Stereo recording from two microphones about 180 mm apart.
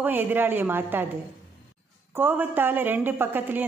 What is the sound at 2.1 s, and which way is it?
A woman's voice, 10° right (ahead or behind).